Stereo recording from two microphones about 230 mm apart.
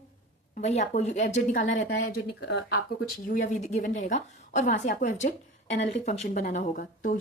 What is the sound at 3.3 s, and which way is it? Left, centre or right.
A woman's voice, left.